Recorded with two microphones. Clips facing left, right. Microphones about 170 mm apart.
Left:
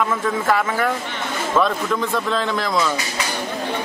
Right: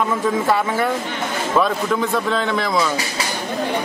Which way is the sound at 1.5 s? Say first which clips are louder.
Right 1 dB; 5° right (ahead or behind).